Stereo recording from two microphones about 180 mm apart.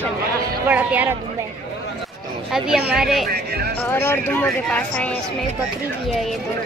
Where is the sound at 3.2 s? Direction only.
60° right (ahead or behind).